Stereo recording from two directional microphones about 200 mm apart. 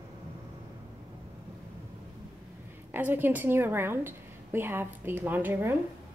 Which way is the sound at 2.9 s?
10° right (ahead or behind).